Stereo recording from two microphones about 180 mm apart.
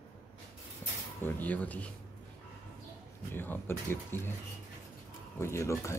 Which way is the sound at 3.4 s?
10° left (ahead or behind).